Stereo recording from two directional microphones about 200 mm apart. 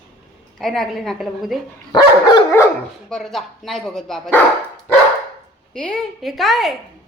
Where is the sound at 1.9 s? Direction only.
20° left (ahead or behind).